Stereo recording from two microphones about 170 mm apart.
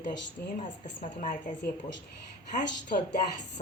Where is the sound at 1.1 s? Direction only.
50° left (ahead or behind).